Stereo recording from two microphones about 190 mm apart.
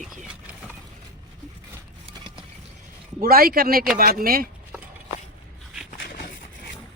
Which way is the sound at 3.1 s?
50° right (ahead or behind).